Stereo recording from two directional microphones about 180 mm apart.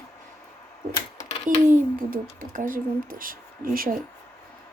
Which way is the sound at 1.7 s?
45° right (ahead or behind).